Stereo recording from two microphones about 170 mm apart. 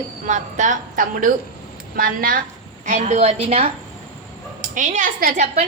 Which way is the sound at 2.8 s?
45° right (ahead or behind).